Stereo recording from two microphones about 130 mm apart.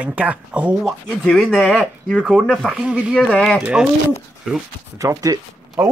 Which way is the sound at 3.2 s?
10° left (ahead or behind).